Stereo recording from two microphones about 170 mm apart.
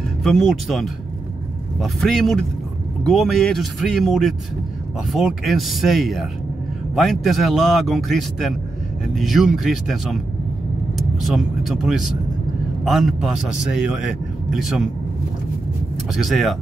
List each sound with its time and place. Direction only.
0.2 s a man's voice: centre (ahead or behind)
11.2 s a man's voice: centre (ahead or behind)
16.2 s a man's voice: centre (ahead or behind)